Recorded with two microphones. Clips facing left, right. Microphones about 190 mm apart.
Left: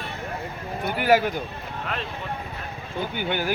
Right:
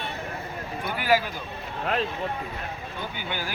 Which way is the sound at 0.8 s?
60° left (ahead or behind).